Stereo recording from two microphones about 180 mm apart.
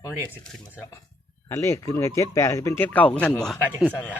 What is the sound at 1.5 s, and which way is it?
Speech, 15° left (ahead or behind).